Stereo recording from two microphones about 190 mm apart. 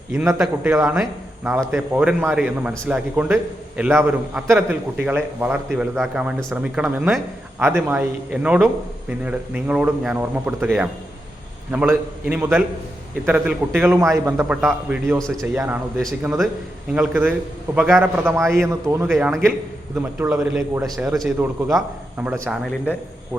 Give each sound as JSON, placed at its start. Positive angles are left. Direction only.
{"t": 0.1, "sound": "a man's voice", "side_deg": -10}
{"t": 19.1, "sound": "a man's voice", "side_deg": 0}